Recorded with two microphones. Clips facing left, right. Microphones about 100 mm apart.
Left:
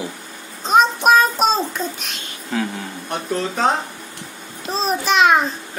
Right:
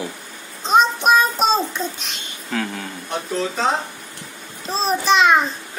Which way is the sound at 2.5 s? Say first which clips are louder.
Left 2 dB; 15° left (ahead or behind).